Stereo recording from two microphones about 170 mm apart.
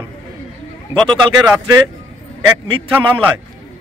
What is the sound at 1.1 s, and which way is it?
Speech, 25° right (ahead or behind).